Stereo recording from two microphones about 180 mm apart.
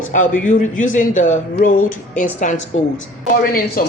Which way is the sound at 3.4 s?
55° left (ahead or behind).